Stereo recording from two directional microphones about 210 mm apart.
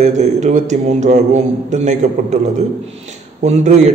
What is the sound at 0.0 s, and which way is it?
A man's voice, 35° right (ahead or behind).